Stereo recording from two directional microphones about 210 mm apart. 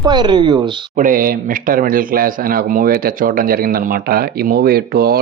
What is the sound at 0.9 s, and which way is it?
A man's voice, 40° right (ahead or behind).